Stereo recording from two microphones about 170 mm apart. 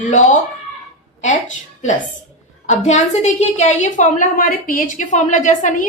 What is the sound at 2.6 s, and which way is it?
Speech, 45° left (ahead or behind).